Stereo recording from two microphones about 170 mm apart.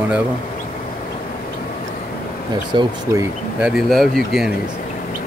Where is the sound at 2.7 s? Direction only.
25° right (ahead or behind).